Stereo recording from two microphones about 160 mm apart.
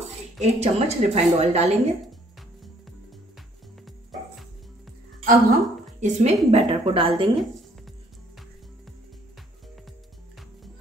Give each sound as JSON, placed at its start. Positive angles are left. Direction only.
{"t": 0.4, "sound": "a woman's voice", "side_deg": -45}
{"t": 3.8, "sound": "music", "side_deg": 0}
{"t": 5.2, "sound": "a woman's voice", "side_deg": -55}